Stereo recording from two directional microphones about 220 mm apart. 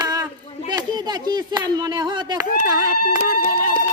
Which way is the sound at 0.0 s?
15° right (ahead or behind).